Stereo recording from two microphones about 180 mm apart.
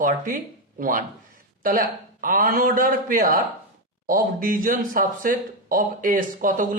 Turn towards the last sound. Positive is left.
turn(degrees=-45)  # may be behind; listen again after turning